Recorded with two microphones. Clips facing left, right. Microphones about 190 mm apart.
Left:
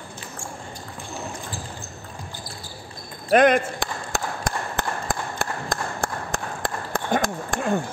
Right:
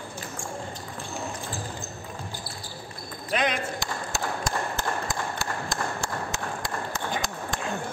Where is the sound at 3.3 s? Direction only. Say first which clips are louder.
Left 10 dB; 50° left (ahead or behind).